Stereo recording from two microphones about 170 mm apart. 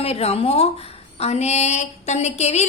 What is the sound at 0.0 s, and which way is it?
A woman's voice, 35° left (ahead or behind).